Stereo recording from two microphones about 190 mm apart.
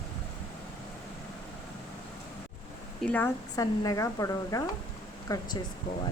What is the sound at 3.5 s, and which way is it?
Speech, 20° left (ahead or behind).